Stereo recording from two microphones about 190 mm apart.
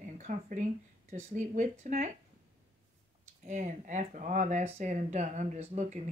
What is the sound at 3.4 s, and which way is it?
Speech, 40° right (ahead or behind).